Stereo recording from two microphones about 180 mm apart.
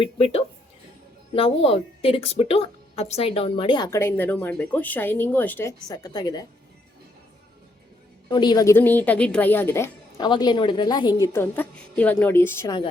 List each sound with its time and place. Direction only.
0.0 s a woman's voice: 35° left (ahead or behind)
8.3 s a woman's voice: 25° left (ahead or behind)
11.2 s a woman's voice: 15° left (ahead or behind)